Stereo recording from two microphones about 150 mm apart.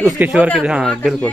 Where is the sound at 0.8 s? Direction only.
5° left (ahead or behind).